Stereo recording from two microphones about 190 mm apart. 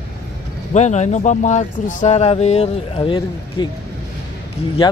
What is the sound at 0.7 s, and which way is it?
A man's voice, 35° left (ahead or behind).